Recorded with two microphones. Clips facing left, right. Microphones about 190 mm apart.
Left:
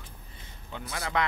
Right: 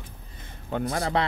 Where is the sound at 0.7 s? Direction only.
50° right (ahead or behind).